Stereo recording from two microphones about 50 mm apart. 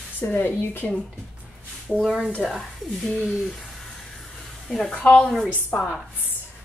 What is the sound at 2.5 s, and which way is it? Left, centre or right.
Speech, centre.